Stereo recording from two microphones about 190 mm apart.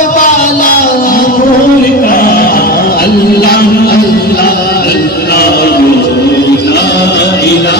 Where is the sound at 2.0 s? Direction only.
50° left (ahead or behind).